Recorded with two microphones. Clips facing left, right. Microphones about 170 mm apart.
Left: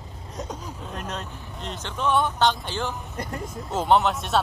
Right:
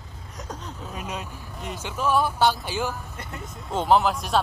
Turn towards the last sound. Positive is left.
turn(degrees=0)  # may be behind; listen again after turning